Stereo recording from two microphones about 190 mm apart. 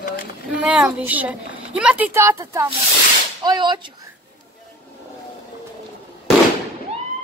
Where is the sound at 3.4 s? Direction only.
20° right (ahead or behind).